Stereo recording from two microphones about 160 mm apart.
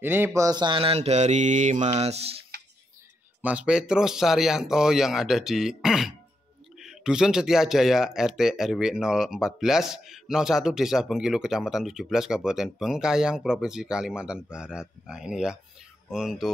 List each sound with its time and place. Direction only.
0.0 s mantra: 15° right (ahead or behind); by 2.3 s 40° right (ahead or behind)
3.4 s speech: 5° right (ahead or behind)